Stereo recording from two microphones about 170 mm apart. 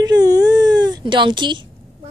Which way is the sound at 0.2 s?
20° right (ahead or behind).